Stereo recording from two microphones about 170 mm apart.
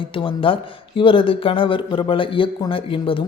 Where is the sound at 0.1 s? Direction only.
30° left (ahead or behind).